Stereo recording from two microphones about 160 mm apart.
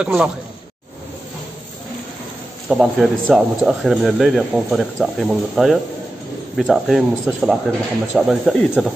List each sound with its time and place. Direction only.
0.0 s speech: 5° right (ahead or behind)
2.7 s speech: centre (ahead or behind)